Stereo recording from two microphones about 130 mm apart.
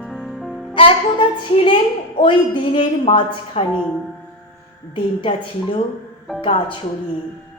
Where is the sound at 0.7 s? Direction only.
40° left (ahead or behind).